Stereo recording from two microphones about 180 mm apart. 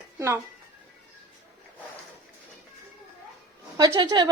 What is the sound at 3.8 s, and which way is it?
Speech, 25° right (ahead or behind).